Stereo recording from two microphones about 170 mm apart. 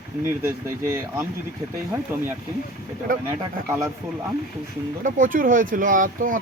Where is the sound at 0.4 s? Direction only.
15° right (ahead or behind).